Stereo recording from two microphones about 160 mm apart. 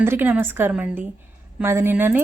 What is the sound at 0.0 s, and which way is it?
Speech, 15° right (ahead or behind).